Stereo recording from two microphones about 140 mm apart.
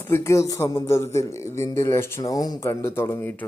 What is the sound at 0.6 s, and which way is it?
Speech, 35° left (ahead or behind).